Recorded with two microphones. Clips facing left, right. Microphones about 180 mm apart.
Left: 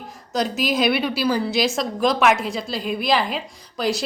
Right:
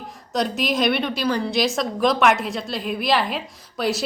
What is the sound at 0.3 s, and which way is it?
A woman's voice, centre (ahead or behind).